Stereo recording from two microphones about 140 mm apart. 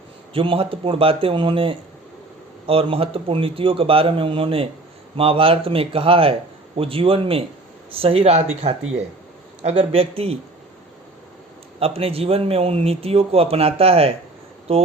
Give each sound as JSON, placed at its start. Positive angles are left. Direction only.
{"t": 0.3, "sound": "a man's voice", "side_deg": -40}
{"t": 11.8, "sound": "a man's voice", "side_deg": -45}